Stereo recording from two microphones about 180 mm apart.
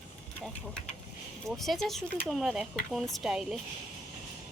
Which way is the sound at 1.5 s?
Centre (ahead or behind).